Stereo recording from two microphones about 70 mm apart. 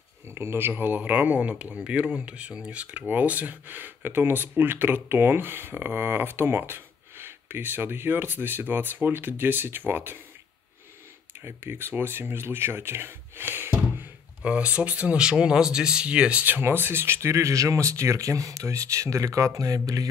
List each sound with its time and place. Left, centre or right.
0.3 s speech: right
11.4 s speech: right
14.4 s speech: centre; by 20.1 s right